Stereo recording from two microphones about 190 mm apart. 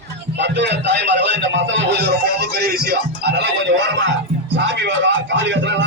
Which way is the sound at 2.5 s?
55° right (ahead or behind).